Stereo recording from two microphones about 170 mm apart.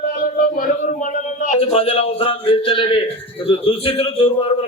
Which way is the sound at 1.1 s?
50° left (ahead or behind).